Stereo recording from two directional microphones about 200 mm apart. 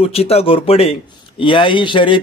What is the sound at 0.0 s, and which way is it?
A man's voice, 30° left (ahead or behind).